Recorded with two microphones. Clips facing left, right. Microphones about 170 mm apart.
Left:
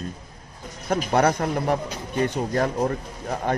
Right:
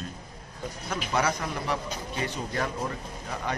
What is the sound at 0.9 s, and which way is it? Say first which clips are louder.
Speech: left 8 dB; 55° left (ahead or behind).